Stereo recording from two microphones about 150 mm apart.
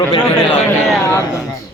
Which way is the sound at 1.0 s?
20° left (ahead or behind).